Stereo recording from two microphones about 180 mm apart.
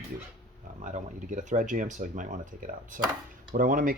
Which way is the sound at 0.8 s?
45° right (ahead or behind).